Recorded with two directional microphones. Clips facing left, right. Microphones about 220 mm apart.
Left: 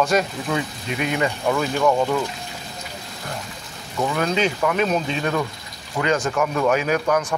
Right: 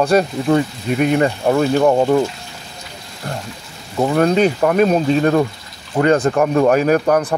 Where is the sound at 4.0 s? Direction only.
40° right (ahead or behind).